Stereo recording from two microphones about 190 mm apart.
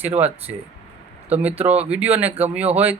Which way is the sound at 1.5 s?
35° right (ahead or behind).